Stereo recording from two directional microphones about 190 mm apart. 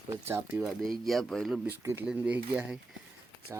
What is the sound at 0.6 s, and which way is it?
Speech, centre (ahead or behind).